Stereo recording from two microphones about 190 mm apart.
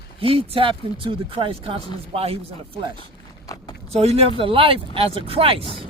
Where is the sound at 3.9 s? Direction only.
35° right (ahead or behind).